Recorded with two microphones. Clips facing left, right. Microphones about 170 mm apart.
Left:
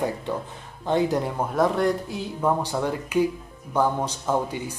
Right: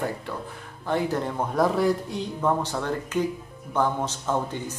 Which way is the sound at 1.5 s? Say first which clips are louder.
Even; centre (ahead or behind).